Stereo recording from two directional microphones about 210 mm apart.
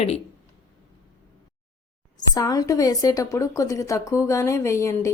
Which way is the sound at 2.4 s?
15° left (ahead or behind).